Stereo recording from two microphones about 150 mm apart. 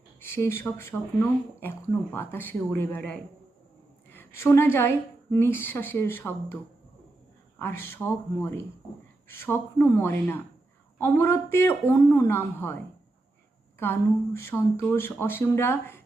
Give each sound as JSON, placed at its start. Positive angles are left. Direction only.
{"t": 0.2, "sound": "a woman's voice", "side_deg": 15}
{"t": 7.6, "sound": "speech", "side_deg": 15}
{"t": 14.3, "sound": "speech", "side_deg": 15}